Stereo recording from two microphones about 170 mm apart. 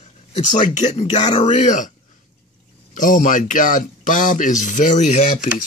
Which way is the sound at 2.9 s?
50° left (ahead or behind).